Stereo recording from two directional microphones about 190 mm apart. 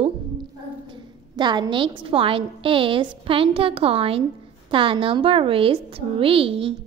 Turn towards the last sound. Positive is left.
turn(degrees=-30)  # may be behind; listen again after turning